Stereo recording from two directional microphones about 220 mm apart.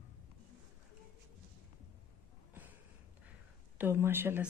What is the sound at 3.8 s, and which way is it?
Speech, 10° right (ahead or behind).